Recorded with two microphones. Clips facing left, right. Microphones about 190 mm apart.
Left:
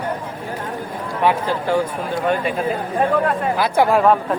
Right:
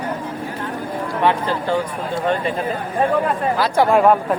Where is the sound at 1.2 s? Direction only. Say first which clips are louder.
Left 1 dB; 10° left (ahead or behind).